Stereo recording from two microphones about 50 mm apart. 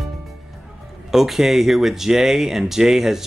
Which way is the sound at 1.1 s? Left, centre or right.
Centre.